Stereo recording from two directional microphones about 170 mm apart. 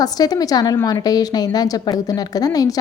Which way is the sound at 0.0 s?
20° left (ahead or behind).